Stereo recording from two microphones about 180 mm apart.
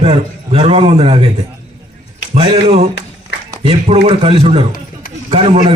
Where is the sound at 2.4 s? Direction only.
35° right (ahead or behind).